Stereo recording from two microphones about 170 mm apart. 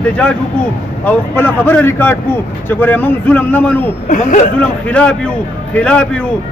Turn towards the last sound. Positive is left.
turn(degrees=5)  # may be behind; listen again after turning